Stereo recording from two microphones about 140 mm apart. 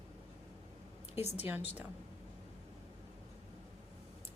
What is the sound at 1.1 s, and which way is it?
Speech, 50° left (ahead or behind).